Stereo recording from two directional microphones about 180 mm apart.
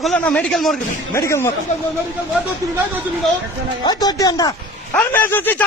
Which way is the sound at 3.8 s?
20° left (ahead or behind).